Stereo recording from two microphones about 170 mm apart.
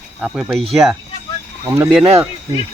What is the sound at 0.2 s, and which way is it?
Speech, 5° right (ahead or behind).